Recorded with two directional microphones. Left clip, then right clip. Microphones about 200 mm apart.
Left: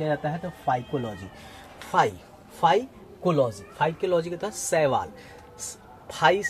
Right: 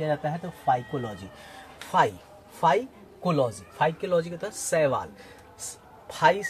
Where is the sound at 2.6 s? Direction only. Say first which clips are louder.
Left 1 dB; 20° left (ahead or behind).